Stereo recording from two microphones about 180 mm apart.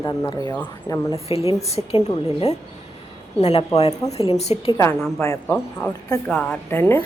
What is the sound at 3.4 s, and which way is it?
A woman's voice, 35° left (ahead or behind).